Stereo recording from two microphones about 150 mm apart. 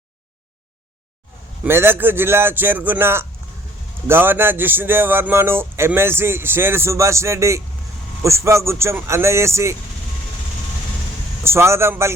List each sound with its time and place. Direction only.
1.6 s speech: 15° right (ahead or behind)
11.4 s speech: 15° right (ahead or behind)